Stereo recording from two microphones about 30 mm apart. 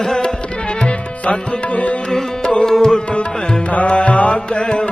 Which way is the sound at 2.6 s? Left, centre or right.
Centre.